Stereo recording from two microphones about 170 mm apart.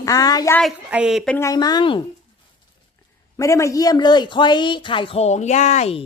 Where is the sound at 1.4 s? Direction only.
20° left (ahead or behind).